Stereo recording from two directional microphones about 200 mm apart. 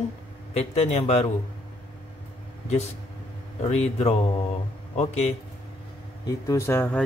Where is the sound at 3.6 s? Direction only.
35° left (ahead or behind).